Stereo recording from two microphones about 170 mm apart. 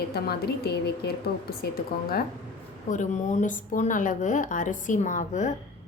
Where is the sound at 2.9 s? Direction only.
45° left (ahead or behind).